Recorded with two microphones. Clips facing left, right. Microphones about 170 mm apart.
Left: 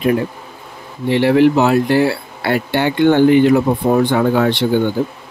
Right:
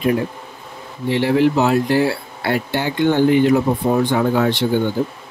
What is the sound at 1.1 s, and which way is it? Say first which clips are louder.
Speech: left 4 dB; 65° left (ahead or behind).